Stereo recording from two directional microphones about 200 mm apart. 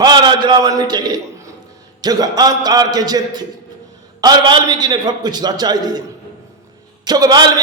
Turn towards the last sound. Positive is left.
turn(degrees=-20)  # may be behind; listen again after turning